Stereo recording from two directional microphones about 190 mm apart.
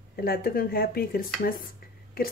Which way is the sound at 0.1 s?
50° left (ahead or behind).